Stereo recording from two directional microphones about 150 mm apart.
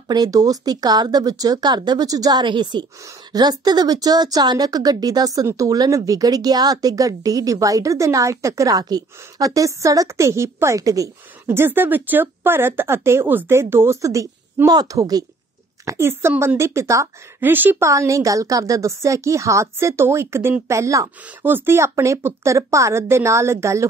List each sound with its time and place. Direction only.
0.1 s a woman's voice: 25° right (ahead or behind)